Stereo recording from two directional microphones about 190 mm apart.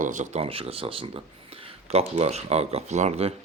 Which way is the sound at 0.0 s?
40° right (ahead or behind).